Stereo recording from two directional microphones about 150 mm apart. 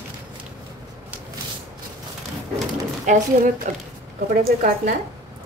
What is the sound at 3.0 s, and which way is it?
Speech, 55° right (ahead or behind).